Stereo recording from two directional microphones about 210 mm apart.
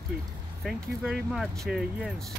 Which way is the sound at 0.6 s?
Centre (ahead or behind).